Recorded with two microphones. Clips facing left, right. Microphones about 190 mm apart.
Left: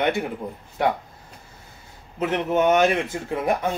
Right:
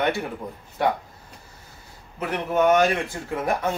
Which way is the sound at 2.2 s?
20° left (ahead or behind).